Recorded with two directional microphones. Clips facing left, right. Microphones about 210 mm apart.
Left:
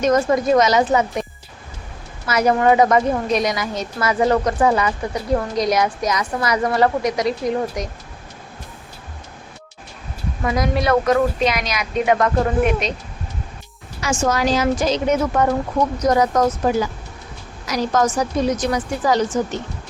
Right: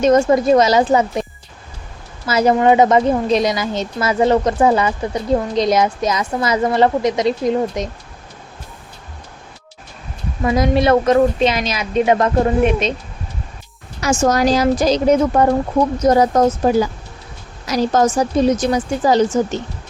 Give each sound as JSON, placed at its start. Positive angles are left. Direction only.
{"t": 0.0, "sound": "a woman's voice", "side_deg": -30}
{"t": 10.4, "sound": "a woman's voice", "side_deg": -25}
{"t": 14.0, "sound": "a woman's voice", "side_deg": -40}